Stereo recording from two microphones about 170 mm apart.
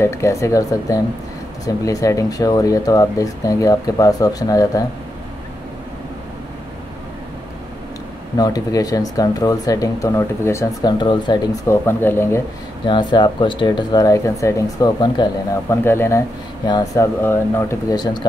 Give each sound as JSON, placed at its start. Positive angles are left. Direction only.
{"t": 0.0, "sound": "speech", "side_deg": 15}
{"t": 8.4, "sound": "speech", "side_deg": 20}
{"t": 11.6, "sound": "speech", "side_deg": 15}
{"t": 12.8, "sound": "speech", "side_deg": 30}
{"t": 15.7, "sound": "speech", "side_deg": 15}